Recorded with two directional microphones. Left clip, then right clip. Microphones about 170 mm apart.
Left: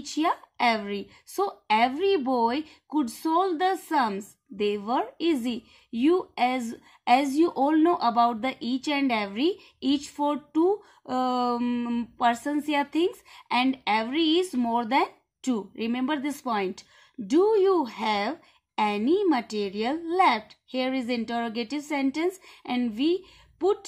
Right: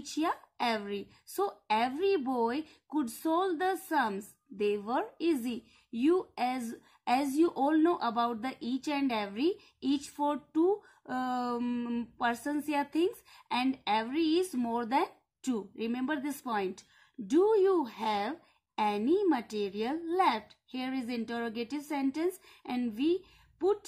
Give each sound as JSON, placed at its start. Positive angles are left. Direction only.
{"t": 0.1, "sound": "a woman's voice", "side_deg": 30}